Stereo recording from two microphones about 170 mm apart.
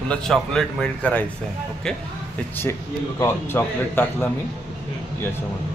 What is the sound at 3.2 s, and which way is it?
Speech, 15° left (ahead or behind).